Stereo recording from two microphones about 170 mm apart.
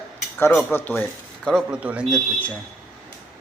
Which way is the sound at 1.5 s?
5° right (ahead or behind).